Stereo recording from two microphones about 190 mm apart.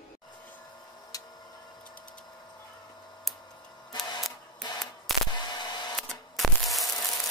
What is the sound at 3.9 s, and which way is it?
Printer, 20° left (ahead or behind).